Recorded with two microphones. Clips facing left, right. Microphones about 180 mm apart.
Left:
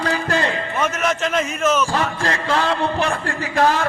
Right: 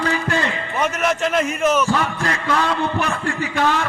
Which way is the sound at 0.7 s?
15° right (ahead or behind).